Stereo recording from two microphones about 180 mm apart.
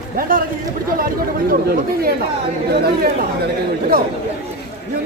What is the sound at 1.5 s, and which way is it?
Speech, 55° right (ahead or behind).